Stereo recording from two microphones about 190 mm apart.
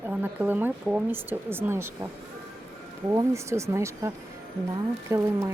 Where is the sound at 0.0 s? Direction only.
10° right (ahead or behind).